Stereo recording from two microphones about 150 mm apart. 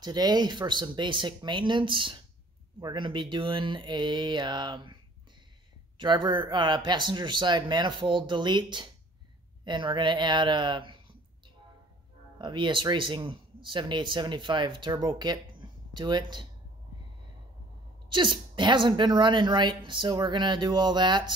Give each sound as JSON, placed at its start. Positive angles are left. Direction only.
{"t": 0.0, "sound": "speech", "side_deg": -25}
{"t": 5.9, "sound": "speech", "side_deg": -30}
{"t": 12.4, "sound": "speech", "side_deg": -30}
{"t": 18.1, "sound": "speech", "side_deg": -30}